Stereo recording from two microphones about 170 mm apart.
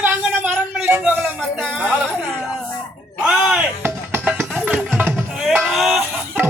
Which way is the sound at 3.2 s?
5° right (ahead or behind).